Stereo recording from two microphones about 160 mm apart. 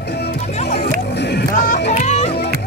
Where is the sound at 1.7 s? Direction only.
45° left (ahead or behind).